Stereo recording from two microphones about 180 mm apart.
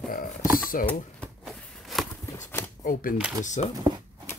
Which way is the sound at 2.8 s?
50° left (ahead or behind).